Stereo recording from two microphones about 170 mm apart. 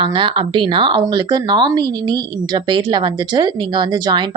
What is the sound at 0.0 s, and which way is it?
Speech, 30° right (ahead or behind).